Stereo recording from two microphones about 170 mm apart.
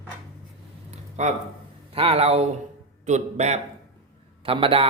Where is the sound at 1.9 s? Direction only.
35° right (ahead or behind).